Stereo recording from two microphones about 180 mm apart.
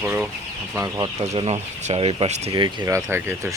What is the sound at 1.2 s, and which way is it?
Speech, 35° right (ahead or behind).